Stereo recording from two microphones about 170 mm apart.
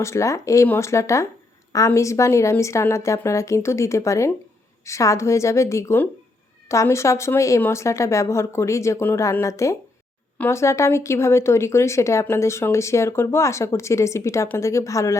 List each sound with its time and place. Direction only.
0.0 s speech: 15° left (ahead or behind)